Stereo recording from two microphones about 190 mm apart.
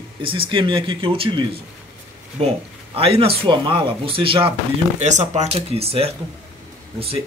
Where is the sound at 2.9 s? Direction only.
30° right (ahead or behind).